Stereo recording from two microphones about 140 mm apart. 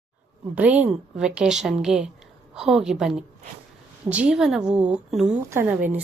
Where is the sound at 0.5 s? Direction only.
10° right (ahead or behind).